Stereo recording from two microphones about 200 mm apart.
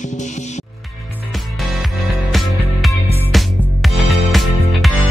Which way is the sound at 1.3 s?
Centre (ahead or behind).